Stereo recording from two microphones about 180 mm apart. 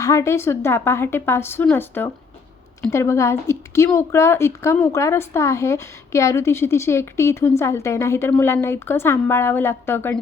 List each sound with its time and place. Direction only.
0.0 s a woman's voice: 20° left (ahead or behind)